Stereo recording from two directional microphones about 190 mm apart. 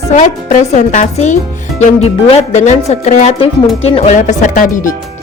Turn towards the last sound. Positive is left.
turn(degrees=45)  # may be behind; listen again after turning